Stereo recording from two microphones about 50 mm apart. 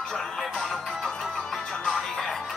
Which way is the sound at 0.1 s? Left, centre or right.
Centre.